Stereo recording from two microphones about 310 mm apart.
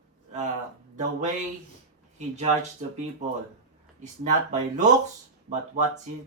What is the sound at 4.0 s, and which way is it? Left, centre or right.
Speech, right.